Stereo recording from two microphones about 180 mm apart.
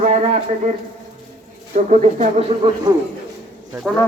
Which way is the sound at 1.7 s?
45° right (ahead or behind).